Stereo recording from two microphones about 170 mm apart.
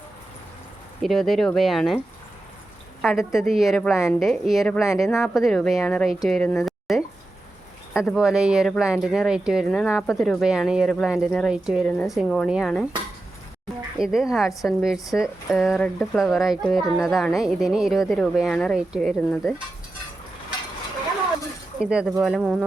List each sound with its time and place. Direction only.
1.0 s a child's voice: centre (ahead or behind)
3.0 s a child's voice: centre (ahead or behind)
6.2 s a sound: 5° left (ahead or behind)
7.9 s a child's voice: 5° right (ahead or behind)
14.0 s a child's voice: 5° right (ahead or behind)
21.8 s a child's voice: 5° right (ahead or behind)